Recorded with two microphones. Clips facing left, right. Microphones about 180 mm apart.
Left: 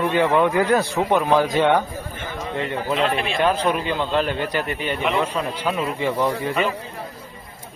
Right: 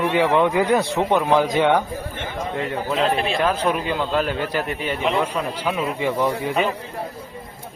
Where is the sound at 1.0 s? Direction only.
15° right (ahead or behind).